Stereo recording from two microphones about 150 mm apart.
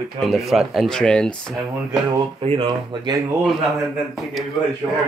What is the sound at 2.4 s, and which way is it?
Speech, 35° right (ahead or behind).